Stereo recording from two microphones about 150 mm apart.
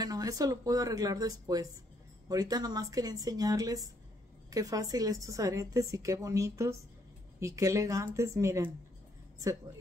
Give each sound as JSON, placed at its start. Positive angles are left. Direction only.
{"t": 0.0, "sound": "a woman's voice", "side_deg": -25}